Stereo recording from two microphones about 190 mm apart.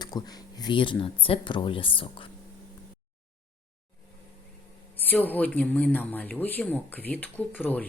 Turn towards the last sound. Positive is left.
turn(degrees=10)  # may be behind; listen again after turning